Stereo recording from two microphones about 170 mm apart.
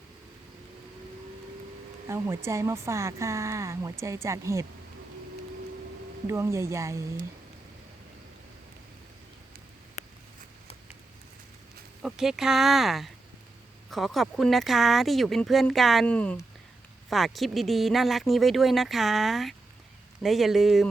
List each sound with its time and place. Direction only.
2.0 s speech: 15° right (ahead or behind)
6.2 s speech: 15° right (ahead or behind)
12.0 s speech: 5° right (ahead or behind)